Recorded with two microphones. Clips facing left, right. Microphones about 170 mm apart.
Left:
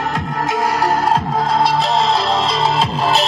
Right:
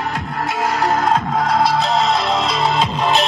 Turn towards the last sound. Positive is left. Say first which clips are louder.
# even
turn(degrees=0)  # may be behind; listen again after turning